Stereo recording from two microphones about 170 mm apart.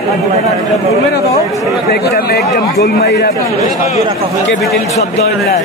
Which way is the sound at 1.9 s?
70° left (ahead or behind).